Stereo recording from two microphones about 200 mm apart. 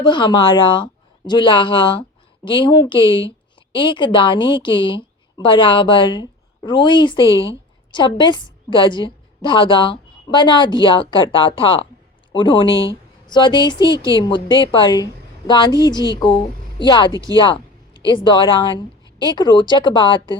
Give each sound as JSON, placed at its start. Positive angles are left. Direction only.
{"t": 0.0, "sound": "a woman's voice", "side_deg": 25}